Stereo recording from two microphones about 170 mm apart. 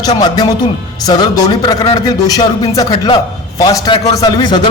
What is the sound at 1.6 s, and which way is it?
A man's voice, 25° left (ahead or behind).